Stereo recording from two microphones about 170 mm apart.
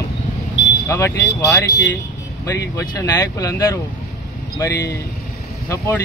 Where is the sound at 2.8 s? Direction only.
20° left (ahead or behind).